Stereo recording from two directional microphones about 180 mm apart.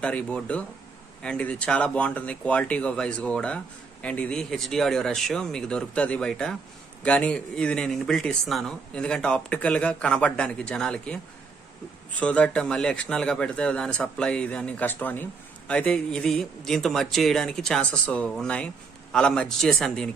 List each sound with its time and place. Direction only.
0.0 s a man's voice: 5° left (ahead or behind)
12.2 s a man's voice: 5° left (ahead or behind)